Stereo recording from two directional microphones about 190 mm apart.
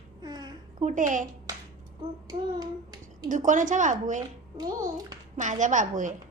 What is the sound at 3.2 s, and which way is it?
Speech, 45° right (ahead or behind).